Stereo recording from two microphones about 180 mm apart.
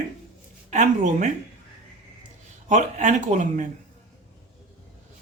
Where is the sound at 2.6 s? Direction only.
45° right (ahead or behind).